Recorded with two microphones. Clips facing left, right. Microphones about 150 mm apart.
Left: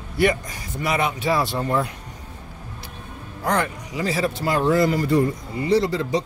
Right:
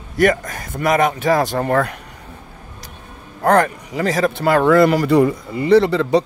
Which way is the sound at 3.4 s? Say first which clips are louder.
Right 8 dB; 55° right (ahead or behind).